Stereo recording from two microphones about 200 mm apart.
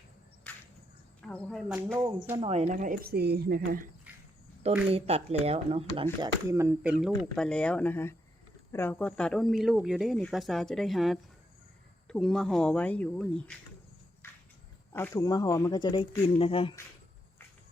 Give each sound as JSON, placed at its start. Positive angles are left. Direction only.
{"t": 0.5, "sound": "a sound", "side_deg": 10}
{"t": 1.3, "sound": "speech", "side_deg": 5}
{"t": 2.4, "sound": "speech", "side_deg": -35}
{"t": 4.9, "sound": "speech", "side_deg": -30}
{"t": 6.1, "sound": "speech", "side_deg": -15}
{"t": 7.2, "sound": "speech", "side_deg": 5}
{"t": 14.2, "sound": "a sound", "side_deg": 10}
{"t": 14.9, "sound": "speech", "side_deg": 15}